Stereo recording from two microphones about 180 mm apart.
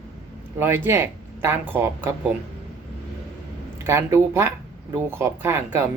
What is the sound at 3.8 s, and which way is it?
Speech, 15° right (ahead or behind).